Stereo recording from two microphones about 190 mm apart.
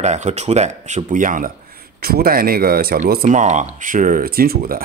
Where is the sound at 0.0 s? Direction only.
35° right (ahead or behind).